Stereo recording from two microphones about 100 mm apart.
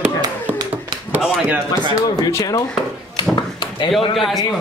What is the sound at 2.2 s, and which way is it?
Speech, 40° left (ahead or behind).